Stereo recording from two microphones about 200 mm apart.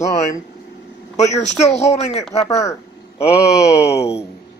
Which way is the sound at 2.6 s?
15° left (ahead or behind).